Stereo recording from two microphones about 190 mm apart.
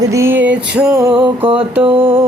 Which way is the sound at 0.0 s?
15° right (ahead or behind).